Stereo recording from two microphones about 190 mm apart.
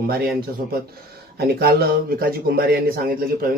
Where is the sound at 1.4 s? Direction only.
55° right (ahead or behind).